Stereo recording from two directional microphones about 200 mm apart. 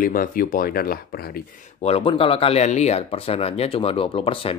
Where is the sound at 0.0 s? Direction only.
45° left (ahead or behind).